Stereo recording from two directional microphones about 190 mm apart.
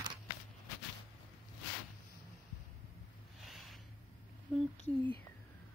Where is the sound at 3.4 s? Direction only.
Centre (ahead or behind).